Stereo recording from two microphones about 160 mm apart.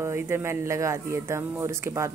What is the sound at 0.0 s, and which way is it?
Speech, 15° right (ahead or behind).